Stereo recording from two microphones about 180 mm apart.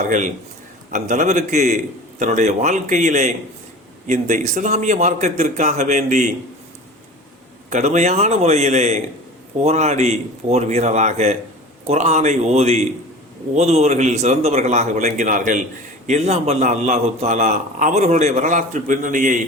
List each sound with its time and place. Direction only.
0.0 s a man's voice: 45° right (ahead or behind)
7.7 s a man's voice: 40° right (ahead or behind)